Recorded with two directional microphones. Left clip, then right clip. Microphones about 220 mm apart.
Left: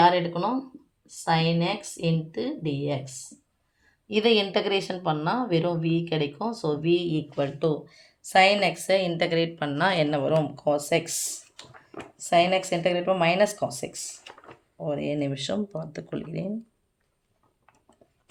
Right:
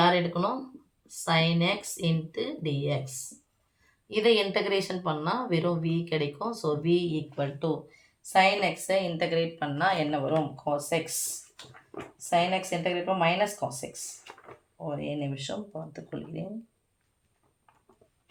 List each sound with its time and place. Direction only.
0.1 s speech: 35° left (ahead or behind)
4.1 s speech: 40° left (ahead or behind)
12.3 s speech: 50° left (ahead or behind)